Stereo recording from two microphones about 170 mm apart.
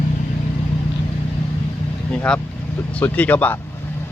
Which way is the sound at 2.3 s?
5° left (ahead or behind).